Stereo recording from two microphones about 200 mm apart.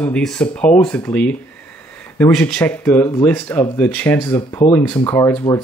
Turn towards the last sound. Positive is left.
turn(degrees=15)  # may be behind; listen again after turning